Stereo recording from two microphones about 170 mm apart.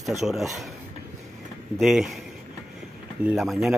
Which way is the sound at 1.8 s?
Centre (ahead or behind).